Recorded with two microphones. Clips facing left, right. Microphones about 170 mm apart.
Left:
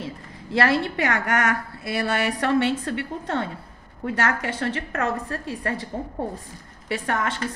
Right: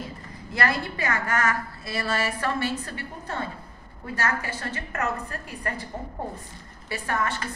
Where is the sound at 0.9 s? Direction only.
75° left (ahead or behind); by 5.9 s 90° left.